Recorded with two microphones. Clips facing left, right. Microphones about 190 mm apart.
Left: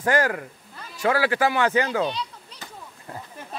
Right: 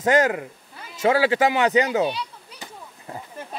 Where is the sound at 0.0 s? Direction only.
20° right (ahead or behind).